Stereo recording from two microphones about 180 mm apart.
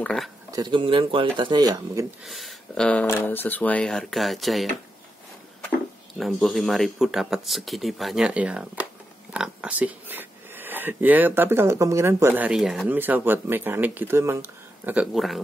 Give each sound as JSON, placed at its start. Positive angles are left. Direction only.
{"t": 0.0, "sound": "speech", "side_deg": 5}
{"t": 0.5, "sound": "speech", "side_deg": -25}
{"t": 2.2, "sound": "speech", "side_deg": 0}
{"t": 6.1, "sound": "speech", "side_deg": 0}